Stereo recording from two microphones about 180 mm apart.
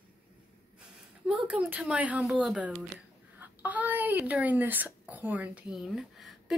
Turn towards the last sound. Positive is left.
turn(degrees=0)  # may be behind; listen again after turning